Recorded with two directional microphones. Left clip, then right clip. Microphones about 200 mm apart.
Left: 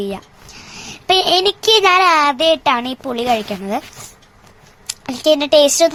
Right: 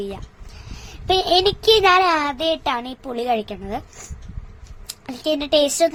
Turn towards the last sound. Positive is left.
turn(degrees=10)  # may be behind; listen again after turning